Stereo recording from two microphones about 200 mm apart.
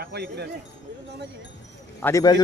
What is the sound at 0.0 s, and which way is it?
Speech, 55° right (ahead or behind).